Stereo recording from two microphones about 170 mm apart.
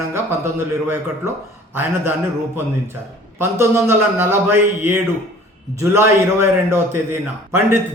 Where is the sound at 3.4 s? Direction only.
15° right (ahead or behind).